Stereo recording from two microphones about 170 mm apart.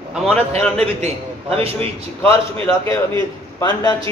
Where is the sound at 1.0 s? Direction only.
35° right (ahead or behind).